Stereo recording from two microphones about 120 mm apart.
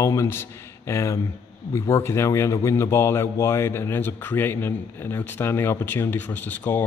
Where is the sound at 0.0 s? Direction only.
25° left (ahead or behind).